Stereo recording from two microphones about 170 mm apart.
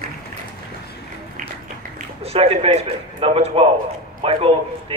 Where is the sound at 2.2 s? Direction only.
35° right (ahead or behind).